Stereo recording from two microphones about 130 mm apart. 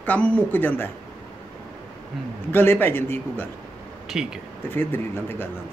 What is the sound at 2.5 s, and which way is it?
Speech, 15° left (ahead or behind).